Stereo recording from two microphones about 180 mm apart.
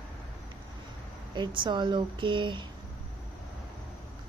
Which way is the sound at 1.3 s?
25° right (ahead or behind).